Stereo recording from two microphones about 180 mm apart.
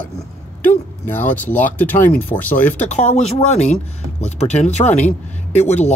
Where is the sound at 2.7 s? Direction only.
40° left (ahead or behind).